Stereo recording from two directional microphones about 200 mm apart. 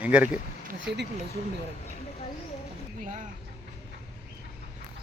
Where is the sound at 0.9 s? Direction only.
55° right (ahead or behind).